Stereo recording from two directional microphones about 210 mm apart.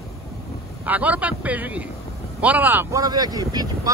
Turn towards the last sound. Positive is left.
turn(degrees=-20)  # may be behind; listen again after turning